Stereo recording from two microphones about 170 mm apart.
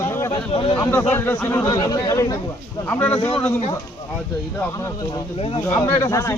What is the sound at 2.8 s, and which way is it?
Speech, 10° left (ahead or behind).